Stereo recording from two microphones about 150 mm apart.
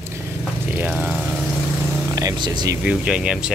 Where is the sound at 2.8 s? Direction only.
5° right (ahead or behind).